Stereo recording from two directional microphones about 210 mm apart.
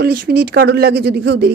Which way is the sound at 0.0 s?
50° right (ahead or behind).